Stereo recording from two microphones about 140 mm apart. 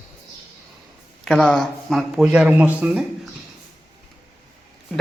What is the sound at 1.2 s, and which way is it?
Speech, 5° left (ahead or behind).